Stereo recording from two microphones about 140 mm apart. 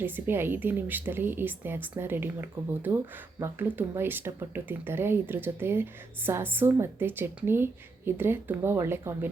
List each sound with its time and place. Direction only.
0.0 s speech: 15° right (ahead or behind)